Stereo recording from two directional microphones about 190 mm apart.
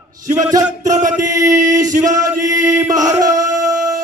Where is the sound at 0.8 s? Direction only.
40° right (ahead or behind).